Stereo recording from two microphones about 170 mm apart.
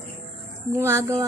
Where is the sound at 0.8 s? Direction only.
15° right (ahead or behind).